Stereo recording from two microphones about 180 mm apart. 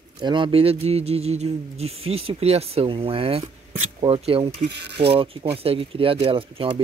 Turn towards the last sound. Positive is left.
turn(degrees=-30)  # may be behind; listen again after turning